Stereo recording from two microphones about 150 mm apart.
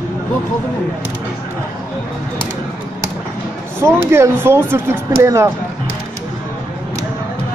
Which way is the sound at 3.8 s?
15° right (ahead or behind).